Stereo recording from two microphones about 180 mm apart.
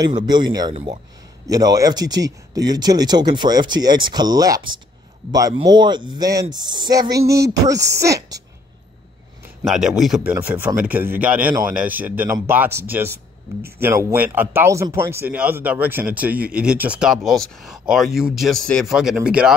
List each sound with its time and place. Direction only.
0.0 s speech: 25° right (ahead or behind)
9.7 s speech: centre (ahead or behind)